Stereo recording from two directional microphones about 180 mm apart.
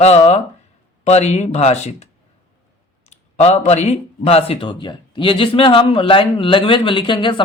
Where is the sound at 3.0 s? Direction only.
35° left (ahead or behind).